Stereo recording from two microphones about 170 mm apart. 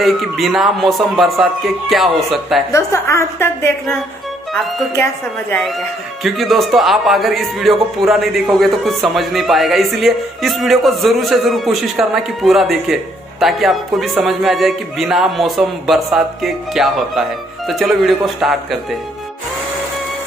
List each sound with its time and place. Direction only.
0.0 s a man's voice: centre (ahead or behind)
2.7 s a woman's voice: 15° left (ahead or behind)
6.2 s a man's voice: centre (ahead or behind)